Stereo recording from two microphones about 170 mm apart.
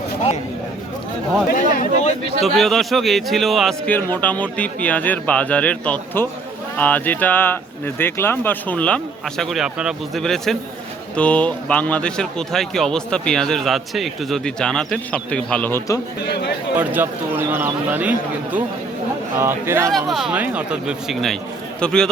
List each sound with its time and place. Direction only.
1.5 s speech: 45° left (ahead or behind)
2.4 s a man's voice: centre (ahead or behind)
16.2 s speech: 75° left (ahead or behind)
16.7 s a man's voice: 10° right (ahead or behind)
20.1 s a man's voice: centre (ahead or behind)